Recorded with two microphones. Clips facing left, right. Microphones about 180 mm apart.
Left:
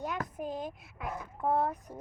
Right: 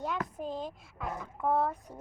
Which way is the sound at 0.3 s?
10° left (ahead or behind).